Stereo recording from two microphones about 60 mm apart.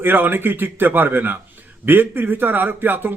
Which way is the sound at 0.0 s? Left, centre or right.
Right.